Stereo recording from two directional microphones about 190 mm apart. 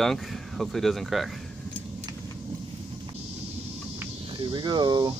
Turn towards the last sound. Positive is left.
turn(degrees=-25)  # may be behind; listen again after turning